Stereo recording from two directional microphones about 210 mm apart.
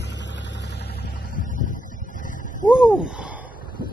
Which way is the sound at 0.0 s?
55° left (ahead or behind).